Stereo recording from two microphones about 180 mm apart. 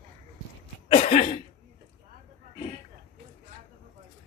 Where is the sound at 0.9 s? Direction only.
40° left (ahead or behind).